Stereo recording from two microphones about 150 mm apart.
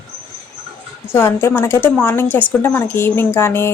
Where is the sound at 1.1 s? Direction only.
15° left (ahead or behind).